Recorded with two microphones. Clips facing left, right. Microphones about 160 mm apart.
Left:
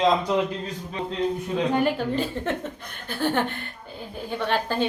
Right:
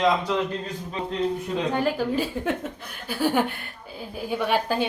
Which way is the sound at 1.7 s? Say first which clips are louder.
Even; centre (ahead or behind).